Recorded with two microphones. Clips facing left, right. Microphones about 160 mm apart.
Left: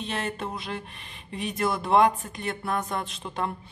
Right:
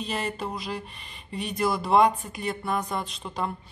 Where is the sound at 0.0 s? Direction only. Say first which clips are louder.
Right 1 dB; centre (ahead or behind).